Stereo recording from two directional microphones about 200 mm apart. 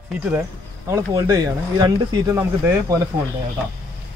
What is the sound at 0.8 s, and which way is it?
Speech, 15° right (ahead or behind).